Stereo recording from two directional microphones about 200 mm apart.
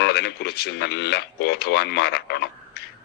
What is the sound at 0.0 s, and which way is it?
Speech, 55° left (ahead or behind).